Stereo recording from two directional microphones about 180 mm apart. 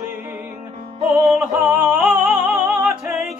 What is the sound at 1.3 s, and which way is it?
Music, 5° right (ahead or behind).